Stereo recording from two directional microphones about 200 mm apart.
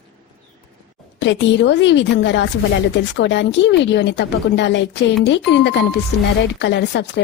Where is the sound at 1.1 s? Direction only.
65° left (ahead or behind).